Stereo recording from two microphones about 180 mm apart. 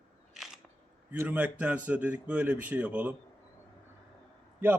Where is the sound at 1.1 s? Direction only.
10° right (ahead or behind).